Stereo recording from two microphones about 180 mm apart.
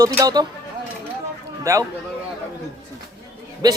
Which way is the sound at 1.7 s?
15° right (ahead or behind).